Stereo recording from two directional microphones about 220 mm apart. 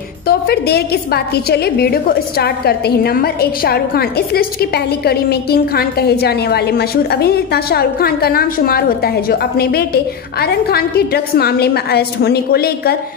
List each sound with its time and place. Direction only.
0.3 s a woman's voice: 45° left (ahead or behind)